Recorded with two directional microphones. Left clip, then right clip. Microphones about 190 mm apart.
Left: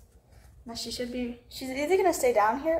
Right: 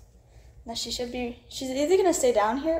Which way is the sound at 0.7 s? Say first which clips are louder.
Right 3 dB; 15° right (ahead or behind).